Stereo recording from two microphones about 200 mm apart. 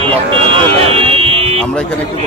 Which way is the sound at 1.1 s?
30° right (ahead or behind).